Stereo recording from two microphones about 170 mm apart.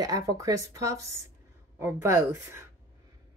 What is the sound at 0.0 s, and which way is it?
Speech, 20° right (ahead or behind).